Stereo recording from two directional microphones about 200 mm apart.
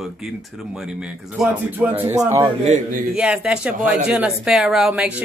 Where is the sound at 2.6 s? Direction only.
40° right (ahead or behind).